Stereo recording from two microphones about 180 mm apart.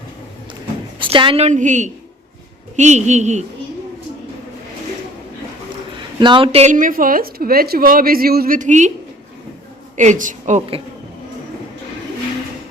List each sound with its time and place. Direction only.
0.9 s a woman's voice: 30° right (ahead or behind)
6.1 s a woman's voice: 25° right (ahead or behind); by 8.9 s 40° right (ahead or behind)
10.0 s a woman's voice: 45° right (ahead or behind)